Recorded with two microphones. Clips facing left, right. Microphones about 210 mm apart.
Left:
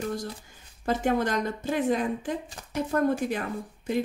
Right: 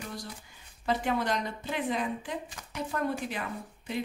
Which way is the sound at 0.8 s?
45° left (ahead or behind).